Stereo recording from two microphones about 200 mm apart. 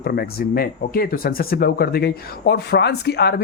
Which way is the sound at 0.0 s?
50° left (ahead or behind).